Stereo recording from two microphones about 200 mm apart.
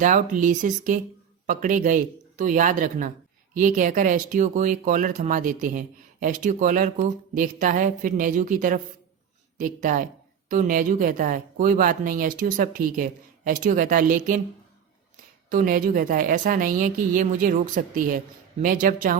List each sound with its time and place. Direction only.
0.0 s speech: 40° right (ahead or behind)
15.4 s a woman's voice: 45° right (ahead or behind)